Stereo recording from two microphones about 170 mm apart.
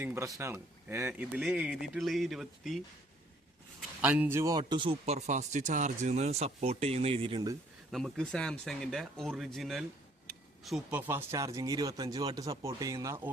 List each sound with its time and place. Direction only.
0.0 s a man's voice: 15° right (ahead or behind); by 7.5 s 30° right (ahead or behind)
7.9 s speech: centre (ahead or behind); by 13.3 s 20° right (ahead or behind)